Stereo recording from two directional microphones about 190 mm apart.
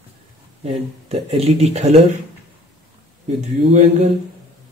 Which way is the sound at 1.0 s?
35° right (ahead or behind).